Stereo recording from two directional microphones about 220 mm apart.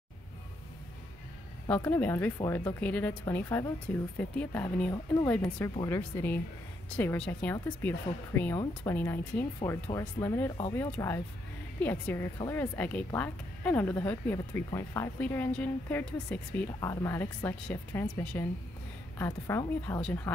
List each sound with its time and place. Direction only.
1.7 s a woman's voice: 10° left (ahead or behind)